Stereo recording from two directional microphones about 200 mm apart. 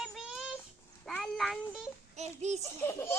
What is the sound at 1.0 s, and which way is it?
Child singing, centre (ahead or behind).